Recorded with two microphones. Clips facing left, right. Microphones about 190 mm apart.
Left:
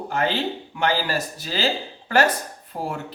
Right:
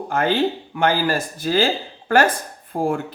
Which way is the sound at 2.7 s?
50° right (ahead or behind).